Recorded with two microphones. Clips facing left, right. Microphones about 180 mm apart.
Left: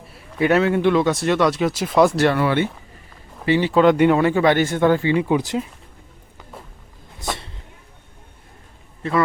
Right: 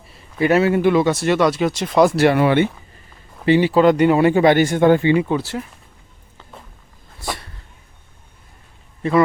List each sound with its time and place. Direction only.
0.1 s speech: centre (ahead or behind); by 3.7 s 20° right (ahead or behind)
3.7 s speech: centre (ahead or behind)
4.2 s speech: 15° right (ahead or behind)
5.3 s speech: 20° left (ahead or behind)
7.3 s a sound: 25° left (ahead or behind)